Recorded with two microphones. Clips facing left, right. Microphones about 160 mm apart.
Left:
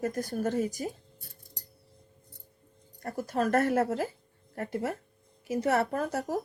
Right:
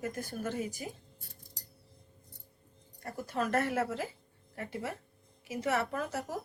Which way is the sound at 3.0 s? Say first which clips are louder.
Left 5 dB; 45° left (ahead or behind).